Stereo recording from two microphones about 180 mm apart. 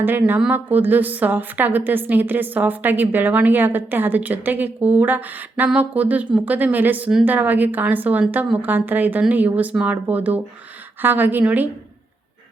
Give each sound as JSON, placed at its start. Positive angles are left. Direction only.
{"t": 0.0, "sound": "a woman's voice", "side_deg": -10}